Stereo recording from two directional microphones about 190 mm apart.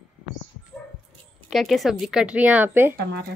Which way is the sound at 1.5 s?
Centre (ahead or behind).